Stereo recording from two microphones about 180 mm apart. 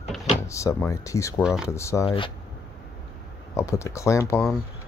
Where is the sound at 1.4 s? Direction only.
5° right (ahead or behind).